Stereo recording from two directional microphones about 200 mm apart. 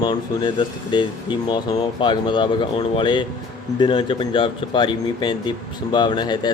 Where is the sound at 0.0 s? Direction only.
20° left (ahead or behind).